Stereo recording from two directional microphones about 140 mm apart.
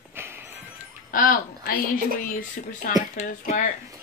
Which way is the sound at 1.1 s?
85° left.